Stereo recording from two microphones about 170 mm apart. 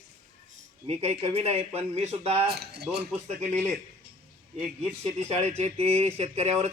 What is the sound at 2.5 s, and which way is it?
Speech, 70° right (ahead or behind).